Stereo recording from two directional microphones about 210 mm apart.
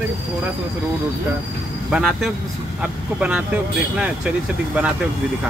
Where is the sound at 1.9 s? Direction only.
Centre (ahead or behind).